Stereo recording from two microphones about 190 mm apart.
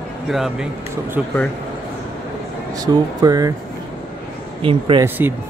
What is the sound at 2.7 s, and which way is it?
Speech, 20° right (ahead or behind).